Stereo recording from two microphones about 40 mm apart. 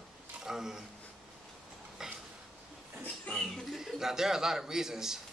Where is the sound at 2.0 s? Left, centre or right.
Centre.